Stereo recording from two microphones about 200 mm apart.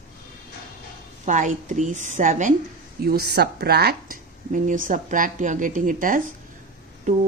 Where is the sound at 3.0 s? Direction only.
50° right (ahead or behind).